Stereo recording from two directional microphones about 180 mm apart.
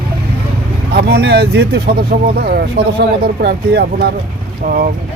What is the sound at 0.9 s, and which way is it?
Speech, 65° right (ahead or behind).